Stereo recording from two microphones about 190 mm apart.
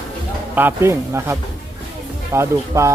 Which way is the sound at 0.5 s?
10° right (ahead or behind).